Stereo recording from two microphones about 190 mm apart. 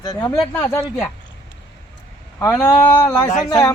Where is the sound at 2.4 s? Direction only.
15° left (ahead or behind).